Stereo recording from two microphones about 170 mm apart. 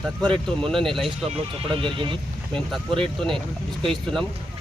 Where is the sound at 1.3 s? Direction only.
30° right (ahead or behind).